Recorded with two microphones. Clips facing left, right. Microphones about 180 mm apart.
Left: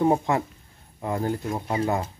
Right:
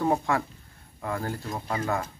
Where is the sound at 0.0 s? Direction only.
20° left (ahead or behind).